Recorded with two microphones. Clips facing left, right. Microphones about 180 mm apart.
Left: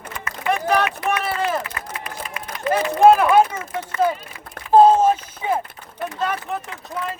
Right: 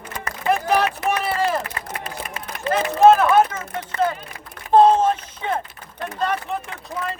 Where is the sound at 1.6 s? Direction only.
30° right (ahead or behind).